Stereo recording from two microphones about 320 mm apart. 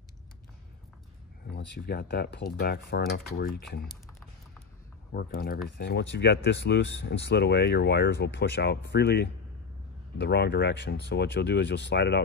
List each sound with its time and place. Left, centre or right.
1.5 s speech: left
5.1 s speech: left